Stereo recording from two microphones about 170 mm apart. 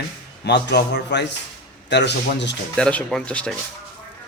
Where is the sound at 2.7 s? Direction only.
5° left (ahead or behind).